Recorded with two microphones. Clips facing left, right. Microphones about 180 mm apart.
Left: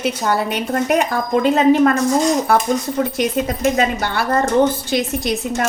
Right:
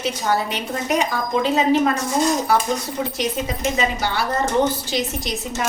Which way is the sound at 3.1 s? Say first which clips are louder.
Left 5 dB; 55° left (ahead or behind).